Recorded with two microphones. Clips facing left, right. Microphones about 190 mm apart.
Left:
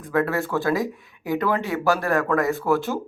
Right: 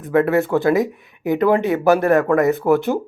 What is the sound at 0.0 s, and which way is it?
Speech, 20° right (ahead or behind).